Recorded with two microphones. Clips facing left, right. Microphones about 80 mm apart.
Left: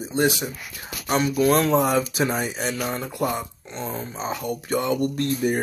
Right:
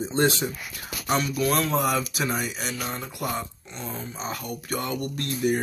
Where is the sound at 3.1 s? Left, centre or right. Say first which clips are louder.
Left 5 dB; left.